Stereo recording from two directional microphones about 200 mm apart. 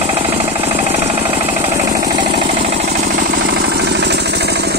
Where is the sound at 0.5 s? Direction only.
30° right (ahead or behind).